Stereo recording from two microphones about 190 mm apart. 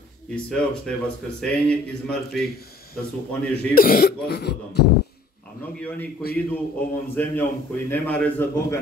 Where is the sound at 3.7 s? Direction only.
50° left (ahead or behind).